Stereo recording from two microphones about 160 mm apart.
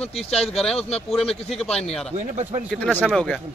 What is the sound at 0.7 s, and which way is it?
Speech, 40° left (ahead or behind).